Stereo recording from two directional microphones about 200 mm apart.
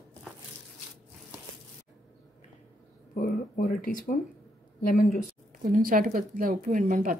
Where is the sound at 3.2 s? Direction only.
45° left (ahead or behind).